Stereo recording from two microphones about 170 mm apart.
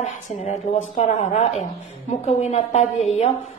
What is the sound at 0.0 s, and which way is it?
A woman's voice, 40° left (ahead or behind).